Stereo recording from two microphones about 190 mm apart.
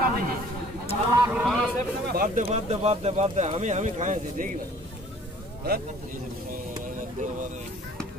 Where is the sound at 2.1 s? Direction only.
45° right (ahead or behind).